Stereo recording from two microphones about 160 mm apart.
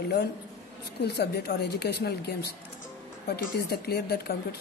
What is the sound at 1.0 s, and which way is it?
Speech, 90° left.